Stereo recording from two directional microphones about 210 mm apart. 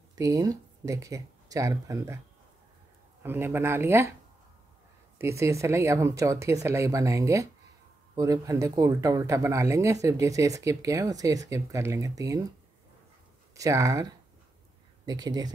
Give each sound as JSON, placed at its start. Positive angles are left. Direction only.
{"t": 0.1, "sound": "speech", "side_deg": -15}
{"t": 3.2, "sound": "speech", "side_deg": -10}
{"t": 5.2, "sound": "speech", "side_deg": -15}
{"t": 13.6, "sound": "speech", "side_deg": -15}